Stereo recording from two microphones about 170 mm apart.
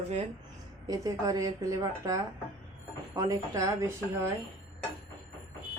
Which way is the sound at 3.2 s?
20° right (ahead or behind).